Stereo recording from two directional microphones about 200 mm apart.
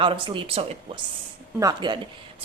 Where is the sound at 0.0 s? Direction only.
25° right (ahead or behind).